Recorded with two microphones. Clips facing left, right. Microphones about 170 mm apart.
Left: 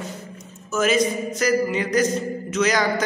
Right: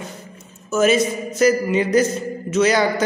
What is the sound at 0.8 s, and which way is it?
A man's voice, 25° right (ahead or behind).